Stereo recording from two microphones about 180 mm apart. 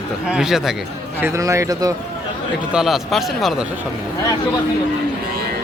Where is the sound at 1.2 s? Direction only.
15° right (ahead or behind).